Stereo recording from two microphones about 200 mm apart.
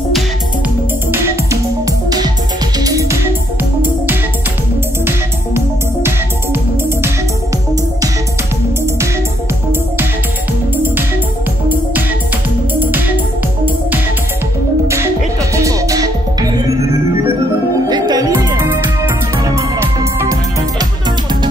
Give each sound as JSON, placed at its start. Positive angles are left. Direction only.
{"t": 1.1, "sound": "music", "side_deg": -15}
{"t": 6.0, "sound": "music", "side_deg": -10}
{"t": 12.7, "sound": "music", "side_deg": -10}
{"t": 15.5, "sound": "music", "side_deg": -15}
{"t": 17.8, "sound": "music", "side_deg": -20}